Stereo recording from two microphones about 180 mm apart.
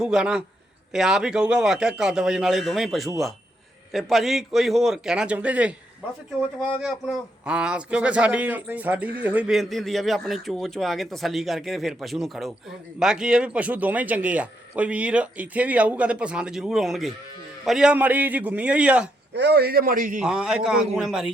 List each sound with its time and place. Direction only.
0.0 s a man's voice: 5° right (ahead or behind)
19.3 s a man's voice: 65° right (ahead or behind); by 20.1 s 50° right (ahead or behind)
20.1 s a man's voice: 5° right (ahead or behind)